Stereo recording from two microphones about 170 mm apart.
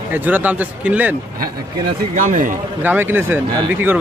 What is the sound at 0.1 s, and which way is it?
Speech, 10° right (ahead or behind).